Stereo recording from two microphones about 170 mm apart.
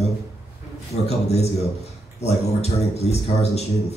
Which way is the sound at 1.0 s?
40° left (ahead or behind).